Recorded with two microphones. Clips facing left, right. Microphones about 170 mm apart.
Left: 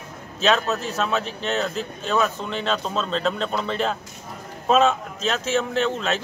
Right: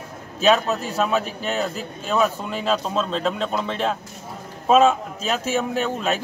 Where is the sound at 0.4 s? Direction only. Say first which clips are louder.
Right 3 dB; 10° right (ahead or behind).